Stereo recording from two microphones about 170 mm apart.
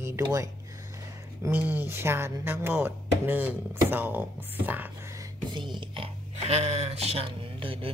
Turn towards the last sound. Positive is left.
turn(degrees=-30)  # may be behind; listen again after turning